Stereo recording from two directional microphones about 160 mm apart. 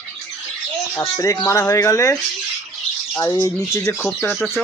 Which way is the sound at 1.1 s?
20° left (ahead or behind).